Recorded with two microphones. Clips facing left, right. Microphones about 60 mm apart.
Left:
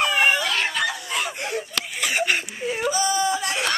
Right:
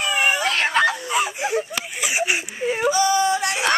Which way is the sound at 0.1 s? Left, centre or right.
Centre.